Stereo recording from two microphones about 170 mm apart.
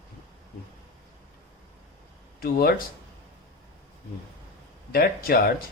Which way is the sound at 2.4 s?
65° left (ahead or behind).